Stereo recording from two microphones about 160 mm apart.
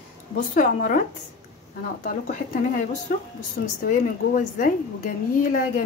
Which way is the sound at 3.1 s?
75° left (ahead or behind).